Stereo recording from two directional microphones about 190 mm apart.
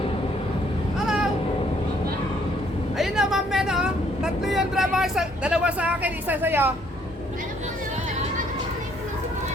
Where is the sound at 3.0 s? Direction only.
Centre (ahead or behind).